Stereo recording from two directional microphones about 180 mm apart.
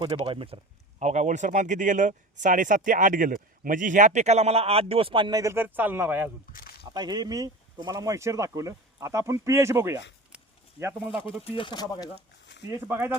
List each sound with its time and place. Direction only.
0.0 s speech: 30° right (ahead or behind); by 6.3 s 10° right (ahead or behind)
6.5 s speech: 50° left (ahead or behind)
6.9 s speech: 20° right (ahead or behind)
10.3 s a sound: 10° right (ahead or behind)
11.4 s speech: 30° left (ahead or behind)
12.9 s speech: 15° right (ahead or behind)